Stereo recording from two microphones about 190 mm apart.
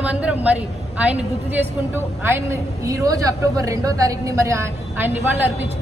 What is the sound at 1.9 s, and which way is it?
A woman's voice, 10° right (ahead or behind).